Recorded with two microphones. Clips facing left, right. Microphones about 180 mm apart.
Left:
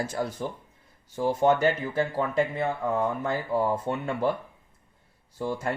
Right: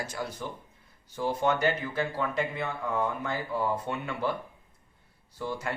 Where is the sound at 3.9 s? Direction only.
35° left (ahead or behind).